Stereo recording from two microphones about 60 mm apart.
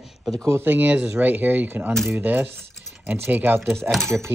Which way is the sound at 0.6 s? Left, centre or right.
Right.